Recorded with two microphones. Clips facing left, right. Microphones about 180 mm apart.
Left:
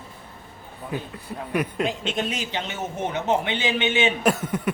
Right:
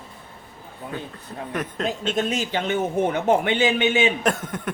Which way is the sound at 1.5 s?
10° left (ahead or behind).